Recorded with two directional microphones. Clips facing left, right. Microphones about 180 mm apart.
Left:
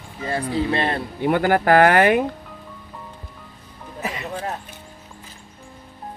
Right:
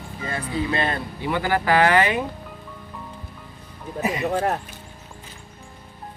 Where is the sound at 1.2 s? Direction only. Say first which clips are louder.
Left 5 dB; 50° left (ahead or behind).